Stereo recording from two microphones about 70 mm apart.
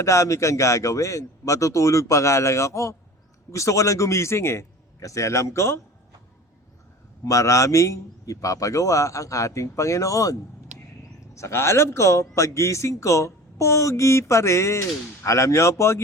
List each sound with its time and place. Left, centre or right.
0.0 s speech: left
7.3 s speech: left
11.3 s speech: left